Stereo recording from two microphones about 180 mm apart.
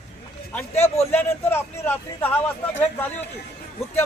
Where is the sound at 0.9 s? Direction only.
10° left (ahead or behind).